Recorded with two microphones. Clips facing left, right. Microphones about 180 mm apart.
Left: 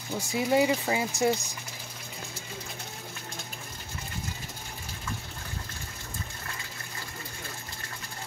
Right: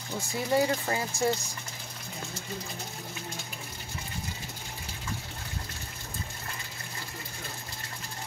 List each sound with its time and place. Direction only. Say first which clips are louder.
0.3 s speech: left 2 dB; 15° left (ahead or behind)